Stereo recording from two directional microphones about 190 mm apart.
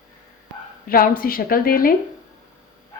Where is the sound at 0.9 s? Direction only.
50° left (ahead or behind).